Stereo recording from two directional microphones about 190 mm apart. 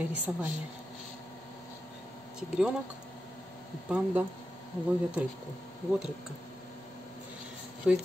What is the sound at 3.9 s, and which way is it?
Speech, 5° right (ahead or behind).